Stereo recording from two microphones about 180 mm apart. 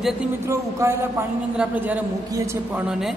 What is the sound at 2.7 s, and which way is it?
Speech, 5° right (ahead or behind).